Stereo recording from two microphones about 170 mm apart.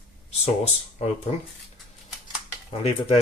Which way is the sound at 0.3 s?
40° left (ahead or behind).